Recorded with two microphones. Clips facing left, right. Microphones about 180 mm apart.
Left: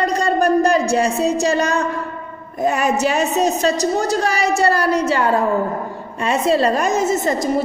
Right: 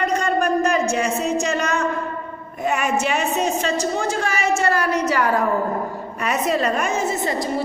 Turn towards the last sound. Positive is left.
turn(degrees=45)  # may be behind; listen again after turning